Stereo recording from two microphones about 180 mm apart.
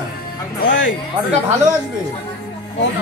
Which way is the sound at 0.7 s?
90° left.